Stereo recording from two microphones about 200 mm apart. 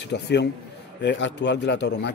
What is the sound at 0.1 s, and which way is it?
A man's voice, 60° left (ahead or behind).